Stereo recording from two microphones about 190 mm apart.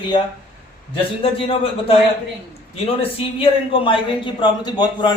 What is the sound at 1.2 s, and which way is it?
A man's voice, 30° left (ahead or behind).